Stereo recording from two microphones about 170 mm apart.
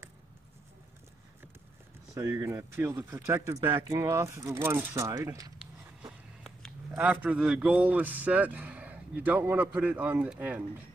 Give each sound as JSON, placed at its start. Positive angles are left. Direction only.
{"t": 2.1, "sound": "a man's voice", "side_deg": -15}
{"t": 6.4, "sound": "a sound", "side_deg": 0}
{"t": 7.0, "sound": "a man's voice", "side_deg": -10}